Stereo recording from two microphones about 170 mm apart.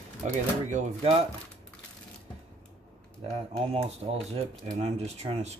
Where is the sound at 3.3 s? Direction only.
35° right (ahead or behind).